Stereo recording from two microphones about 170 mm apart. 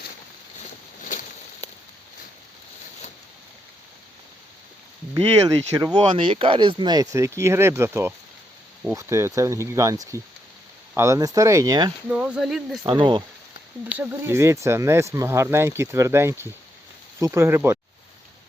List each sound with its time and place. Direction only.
5.7 s speech: 25° right (ahead or behind)
12.0 s speech: 10° right (ahead or behind)
12.8 s speech: 25° right (ahead or behind)
14.0 s speech: 15° right (ahead or behind)